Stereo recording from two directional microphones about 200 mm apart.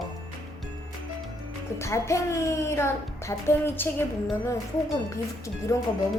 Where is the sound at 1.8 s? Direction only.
15° left (ahead or behind).